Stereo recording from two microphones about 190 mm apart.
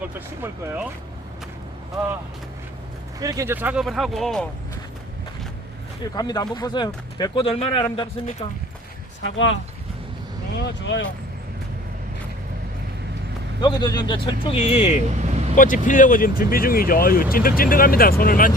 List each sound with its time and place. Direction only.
0.0 s speech: 10° right (ahead or behind)
3.2 s speech: 20° right (ahead or behind); by 4.4 s centre (ahead or behind)
6.1 s speech: 20° left (ahead or behind)
9.2 s speech: 90° left
10.6 s speech: 75° left (ahead or behind)
13.6 s speech: 20° left (ahead or behind)
15.1 s vehicle: 35° right (ahead or behind)
15.5 s speech: 45° left (ahead or behind)